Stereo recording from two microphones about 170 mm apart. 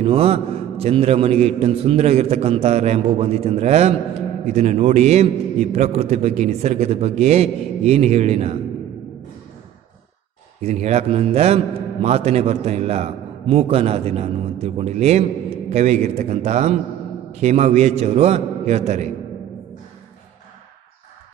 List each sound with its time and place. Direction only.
0.0 s a man's voice: 35° right (ahead or behind)
10.6 s a man's voice: 40° right (ahead or behind)